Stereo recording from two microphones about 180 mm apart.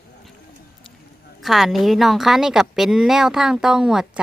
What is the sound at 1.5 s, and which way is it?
A woman's voice, centre (ahead or behind).